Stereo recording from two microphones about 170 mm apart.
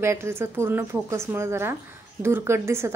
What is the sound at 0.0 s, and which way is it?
Speech, 15° right (ahead or behind).